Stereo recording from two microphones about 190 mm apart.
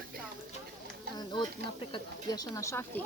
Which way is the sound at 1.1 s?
20° left (ahead or behind).